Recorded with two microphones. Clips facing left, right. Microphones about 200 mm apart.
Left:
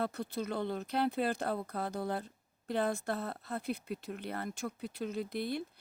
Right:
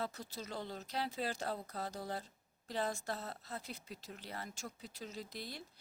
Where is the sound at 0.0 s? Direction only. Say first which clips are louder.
Left 8 dB; 60° left (ahead or behind).